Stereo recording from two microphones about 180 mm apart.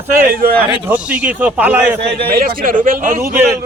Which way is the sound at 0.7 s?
5° right (ahead or behind).